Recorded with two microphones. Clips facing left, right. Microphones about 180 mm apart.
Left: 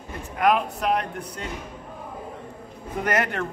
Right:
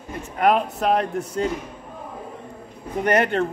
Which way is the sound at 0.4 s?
30° right (ahead or behind).